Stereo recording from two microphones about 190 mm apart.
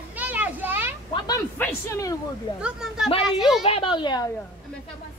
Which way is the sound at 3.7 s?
25° left (ahead or behind).